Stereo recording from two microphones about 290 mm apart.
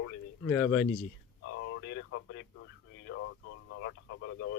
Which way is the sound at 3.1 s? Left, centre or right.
Left.